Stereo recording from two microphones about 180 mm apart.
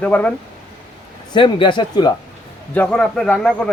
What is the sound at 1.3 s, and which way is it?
Speech, 25° left (ahead or behind).